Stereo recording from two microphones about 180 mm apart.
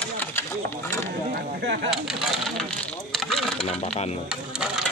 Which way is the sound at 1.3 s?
80° right.